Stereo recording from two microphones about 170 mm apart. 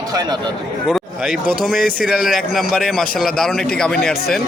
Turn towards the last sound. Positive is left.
turn(degrees=5)  # may be behind; listen again after turning